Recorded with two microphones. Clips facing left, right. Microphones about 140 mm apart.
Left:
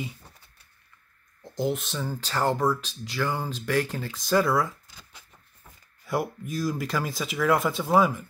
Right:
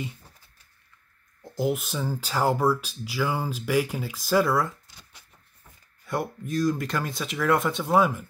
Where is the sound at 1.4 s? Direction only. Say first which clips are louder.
Right 1 dB; 5° right (ahead or behind).